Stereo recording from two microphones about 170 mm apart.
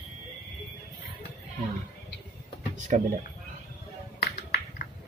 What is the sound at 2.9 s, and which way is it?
Speech, 45° right (ahead or behind).